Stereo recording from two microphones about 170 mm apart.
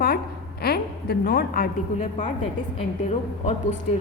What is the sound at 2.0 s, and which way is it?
Speech, 40° left (ahead or behind).